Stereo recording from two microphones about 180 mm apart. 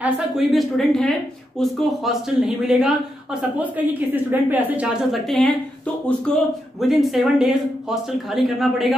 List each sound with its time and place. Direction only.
0.0 s a woman's voice: centre (ahead or behind)